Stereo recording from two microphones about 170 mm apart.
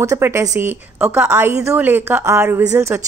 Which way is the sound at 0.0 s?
20° right (ahead or behind).